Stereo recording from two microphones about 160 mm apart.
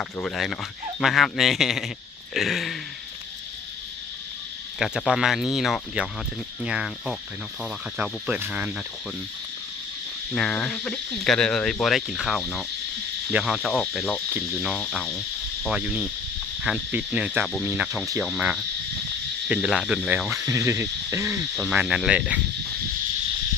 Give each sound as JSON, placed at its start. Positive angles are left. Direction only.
{"t": 0.2, "sound": "speech", "side_deg": 0}
{"t": 4.8, "sound": "speech", "side_deg": -5}
{"t": 7.6, "sound": "cricket", "side_deg": -5}
{"t": 10.3, "sound": "speech", "side_deg": 5}
{"t": 16.6, "sound": "cricket", "side_deg": -10}
{"t": 19.5, "sound": "speech", "side_deg": -5}
{"t": 20.5, "sound": "cricket", "side_deg": -20}